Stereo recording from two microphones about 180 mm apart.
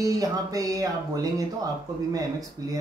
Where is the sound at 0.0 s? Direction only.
20° right (ahead or behind).